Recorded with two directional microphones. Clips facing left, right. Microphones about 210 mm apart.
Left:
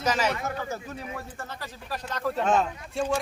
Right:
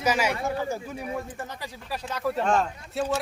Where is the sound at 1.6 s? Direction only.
10° right (ahead or behind).